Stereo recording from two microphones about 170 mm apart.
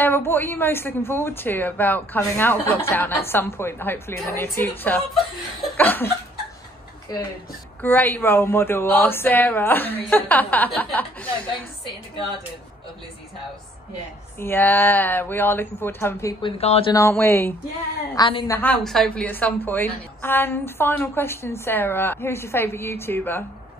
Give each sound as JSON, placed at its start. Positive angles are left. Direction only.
{"t": 0.0, "sound": "a woman's voice", "side_deg": 10}
{"t": 5.8, "sound": "a sound", "side_deg": 10}
{"t": 7.8, "sound": "a woman's voice", "side_deg": 10}
{"t": 14.4, "sound": "a woman's voice", "side_deg": 10}
{"t": 16.4, "sound": "speech", "side_deg": 35}
{"t": 16.9, "sound": "a woman's voice", "side_deg": 15}
{"t": 18.1, "sound": "a woman's voice", "side_deg": 25}
{"t": 18.6, "sound": "a woman's voice", "side_deg": 5}